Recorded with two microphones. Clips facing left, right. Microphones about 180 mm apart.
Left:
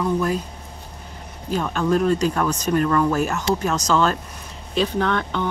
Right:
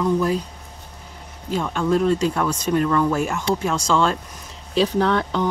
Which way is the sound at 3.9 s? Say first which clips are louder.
Even; 5° left (ahead or behind).